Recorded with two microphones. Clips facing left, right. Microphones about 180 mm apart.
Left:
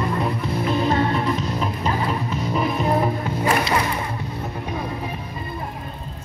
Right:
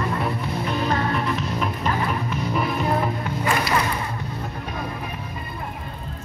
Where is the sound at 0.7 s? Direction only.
25° left (ahead or behind).